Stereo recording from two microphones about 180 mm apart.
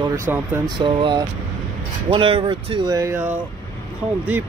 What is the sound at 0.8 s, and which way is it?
Speech, 25° right (ahead or behind).